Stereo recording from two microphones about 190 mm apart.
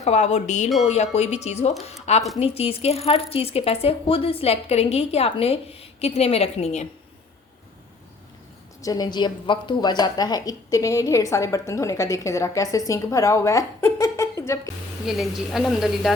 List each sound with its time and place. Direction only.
0.0 s a woman's voice: 35° left (ahead or behind)
8.8 s a woman's voice: 20° left (ahead or behind)
15.0 s a woman's voice: centre (ahead or behind)